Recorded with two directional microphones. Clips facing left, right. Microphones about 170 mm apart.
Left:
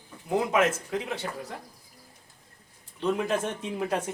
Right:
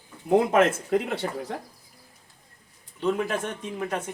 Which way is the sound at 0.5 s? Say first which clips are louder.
Right 4 dB; 55° right (ahead or behind).